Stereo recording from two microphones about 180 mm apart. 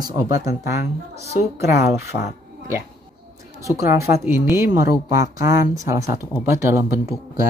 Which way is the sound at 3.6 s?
15° right (ahead or behind).